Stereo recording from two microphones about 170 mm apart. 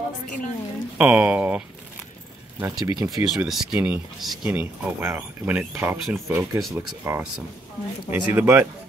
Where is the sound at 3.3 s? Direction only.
Centre (ahead or behind).